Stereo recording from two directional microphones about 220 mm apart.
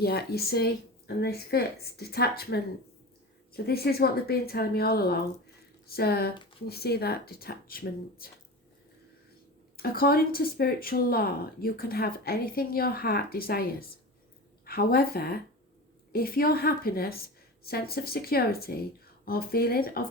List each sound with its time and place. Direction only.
0.0 s speech: 45° left (ahead or behind)
9.7 s speech: 40° left (ahead or behind)